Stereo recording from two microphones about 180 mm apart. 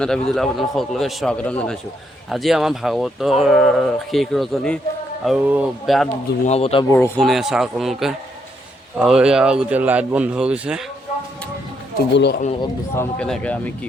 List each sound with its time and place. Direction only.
0.0 s speech: 5° left (ahead or behind)
6.4 s speech: 35° left (ahead or behind)
7.2 s speech: centre (ahead or behind)
11.9 s speech: 65° left (ahead or behind)
13.0 s speech: 5° left (ahead or behind)